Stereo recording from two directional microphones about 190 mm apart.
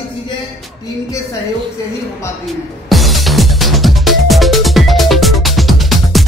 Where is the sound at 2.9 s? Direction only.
Centre (ahead or behind).